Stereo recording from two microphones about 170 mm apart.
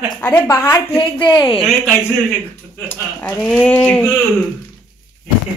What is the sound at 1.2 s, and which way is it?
Speech, 25° left (ahead or behind).